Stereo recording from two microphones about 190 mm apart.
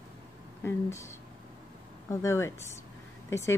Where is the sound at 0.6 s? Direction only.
15° left (ahead or behind).